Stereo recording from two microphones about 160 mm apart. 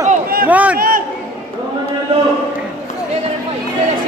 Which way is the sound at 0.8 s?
60° right (ahead or behind).